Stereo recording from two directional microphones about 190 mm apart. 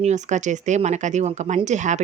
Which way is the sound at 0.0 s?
40° right (ahead or behind).